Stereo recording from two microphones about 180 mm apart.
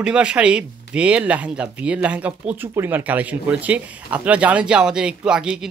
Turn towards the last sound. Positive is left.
turn(degrees=-5)  # may be behind; listen again after turning